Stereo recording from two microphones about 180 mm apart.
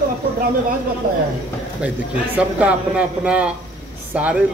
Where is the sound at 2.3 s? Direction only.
5° right (ahead or behind).